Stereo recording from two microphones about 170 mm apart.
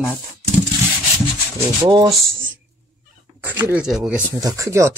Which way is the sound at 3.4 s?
10° right (ahead or behind).